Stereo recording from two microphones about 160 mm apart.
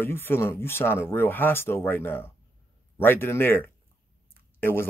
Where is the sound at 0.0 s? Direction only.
15° left (ahead or behind).